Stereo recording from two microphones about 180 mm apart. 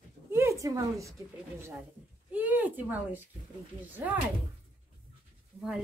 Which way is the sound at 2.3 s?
10° right (ahead or behind).